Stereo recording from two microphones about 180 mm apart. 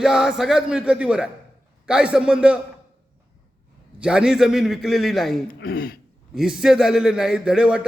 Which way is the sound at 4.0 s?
5° right (ahead or behind).